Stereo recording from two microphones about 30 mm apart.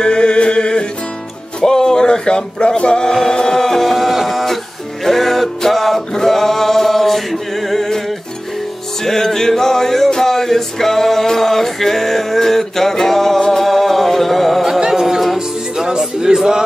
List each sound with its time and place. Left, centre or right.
0.0 s a sound: left
1.6 s male singing: centre
3.8 s a sound: centre
5.0 s music: centre
6.1 s singing: centre
9.0 s music: centre
14.9 s music: centre